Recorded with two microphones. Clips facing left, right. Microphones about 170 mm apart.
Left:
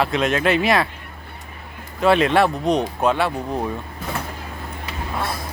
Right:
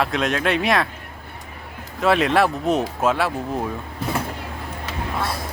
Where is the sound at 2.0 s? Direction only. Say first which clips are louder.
Left 2 dB; centre (ahead or behind).